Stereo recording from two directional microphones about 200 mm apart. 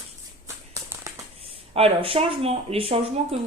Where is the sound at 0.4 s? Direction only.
15° right (ahead or behind).